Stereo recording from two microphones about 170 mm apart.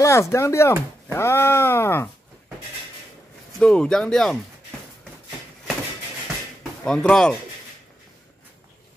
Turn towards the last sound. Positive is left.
turn(degrees=5)  # may be behind; listen again after turning